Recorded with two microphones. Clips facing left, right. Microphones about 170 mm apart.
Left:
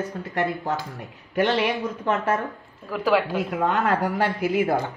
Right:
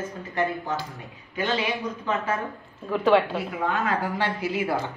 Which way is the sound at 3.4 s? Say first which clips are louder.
Left 4 dB; 75° left (ahead or behind).